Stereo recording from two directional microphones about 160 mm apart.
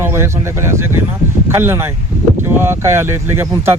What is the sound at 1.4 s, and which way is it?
Speech, 15° right (ahead or behind).